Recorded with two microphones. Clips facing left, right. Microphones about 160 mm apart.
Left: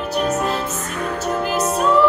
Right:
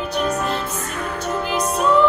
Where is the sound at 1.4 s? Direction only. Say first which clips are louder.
Left 1 dB; centre (ahead or behind).